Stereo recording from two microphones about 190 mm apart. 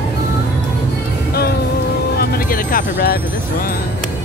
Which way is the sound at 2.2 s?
45° left (ahead or behind).